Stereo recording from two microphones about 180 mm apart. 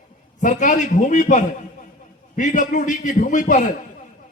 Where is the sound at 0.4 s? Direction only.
45° left (ahead or behind).